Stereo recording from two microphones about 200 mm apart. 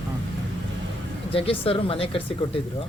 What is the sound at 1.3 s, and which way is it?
Speech, 25° left (ahead or behind).